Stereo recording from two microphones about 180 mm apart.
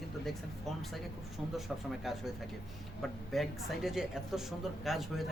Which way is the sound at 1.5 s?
Centre (ahead or behind).